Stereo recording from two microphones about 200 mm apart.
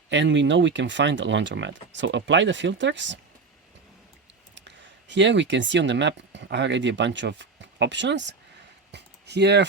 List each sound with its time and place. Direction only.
0.1 s speech: 65° right (ahead or behind)
4.5 s speech: 60° right (ahead or behind)
8.9 s a sound: 60° right (ahead or behind)